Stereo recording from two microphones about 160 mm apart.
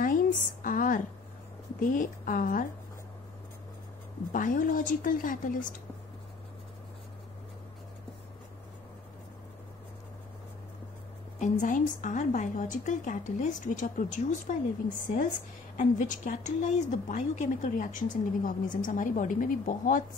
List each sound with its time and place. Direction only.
0.0 s a sound: 60° left (ahead or behind)
1.8 s a woman's voice: 55° left (ahead or behind)
4.3 s a woman's voice: 55° left (ahead or behind)
11.3 s a woman's voice: 50° left (ahead or behind)